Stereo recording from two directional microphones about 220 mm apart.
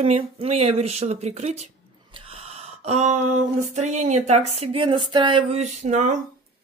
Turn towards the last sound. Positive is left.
turn(degrees=-35)  # may be behind; listen again after turning